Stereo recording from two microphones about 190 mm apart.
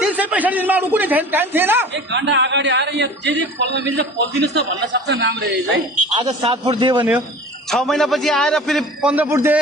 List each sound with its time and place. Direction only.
0.0 s a man's voice: 10° right (ahead or behind)
1.9 s a man's voice: 70° right (ahead or behind)
6.2 s a man's voice: 30° right (ahead or behind)
7.7 s a man's voice: centre (ahead or behind)